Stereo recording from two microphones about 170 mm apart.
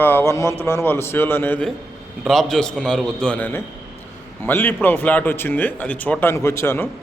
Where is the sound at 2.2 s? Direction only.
Centre (ahead or behind).